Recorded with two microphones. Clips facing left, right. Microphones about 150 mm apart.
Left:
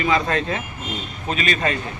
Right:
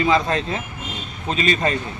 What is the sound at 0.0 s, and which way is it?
Speech, 30° right (ahead or behind).